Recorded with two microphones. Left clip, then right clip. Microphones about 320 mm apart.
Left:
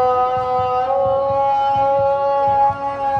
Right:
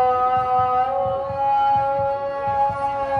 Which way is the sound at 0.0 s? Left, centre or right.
Left.